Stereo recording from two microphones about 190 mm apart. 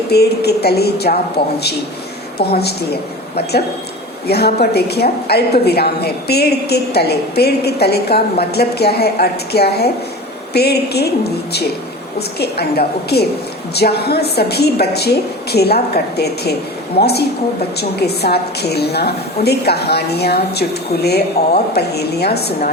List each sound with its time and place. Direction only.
0.1 s a woman's voice: 60° left (ahead or behind)